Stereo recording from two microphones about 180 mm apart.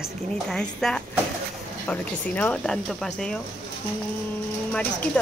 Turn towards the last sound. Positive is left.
turn(degrees=10)  # may be behind; listen again after turning